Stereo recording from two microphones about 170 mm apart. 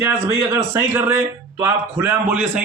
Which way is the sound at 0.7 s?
10° right (ahead or behind).